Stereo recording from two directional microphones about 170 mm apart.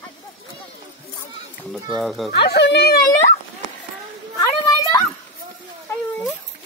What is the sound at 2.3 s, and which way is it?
Speech, 75° left (ahead or behind).